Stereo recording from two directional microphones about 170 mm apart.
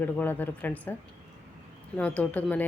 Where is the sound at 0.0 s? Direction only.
10° left (ahead or behind).